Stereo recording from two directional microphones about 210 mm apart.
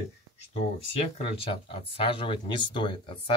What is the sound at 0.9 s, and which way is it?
Speech, 25° left (ahead or behind).